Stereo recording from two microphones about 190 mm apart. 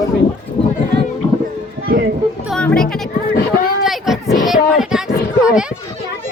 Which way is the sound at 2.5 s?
5° left (ahead or behind).